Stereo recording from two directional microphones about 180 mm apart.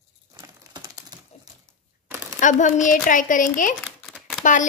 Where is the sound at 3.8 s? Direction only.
Centre (ahead or behind).